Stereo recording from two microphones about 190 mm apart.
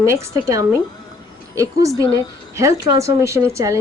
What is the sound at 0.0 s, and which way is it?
Speech, 15° right (ahead or behind).